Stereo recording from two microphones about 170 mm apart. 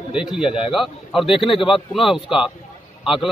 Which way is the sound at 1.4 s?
30° left (ahead or behind).